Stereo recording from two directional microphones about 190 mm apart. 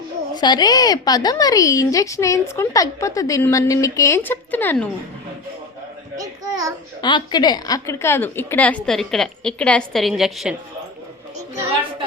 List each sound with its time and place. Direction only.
0.3 s a woman's voice: 20° left (ahead or behind)
6.1 s a sound: 20° right (ahead or behind)
7.0 s a woman's voice: 25° left (ahead or behind); by 10.5 s centre (ahead or behind)